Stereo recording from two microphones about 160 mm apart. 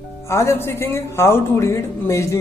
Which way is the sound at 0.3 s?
15° left (ahead or behind).